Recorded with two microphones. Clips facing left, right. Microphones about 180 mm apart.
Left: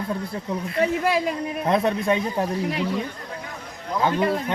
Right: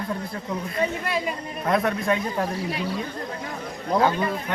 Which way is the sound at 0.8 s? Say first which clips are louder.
Left 5 dB; 90° left.